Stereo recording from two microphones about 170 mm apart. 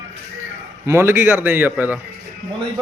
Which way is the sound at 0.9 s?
15° right (ahead or behind).